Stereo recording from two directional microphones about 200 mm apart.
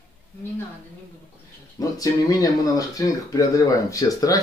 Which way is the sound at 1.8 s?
15° left (ahead or behind).